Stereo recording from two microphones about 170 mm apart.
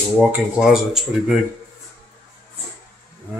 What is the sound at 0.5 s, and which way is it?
Speech, centre (ahead or behind).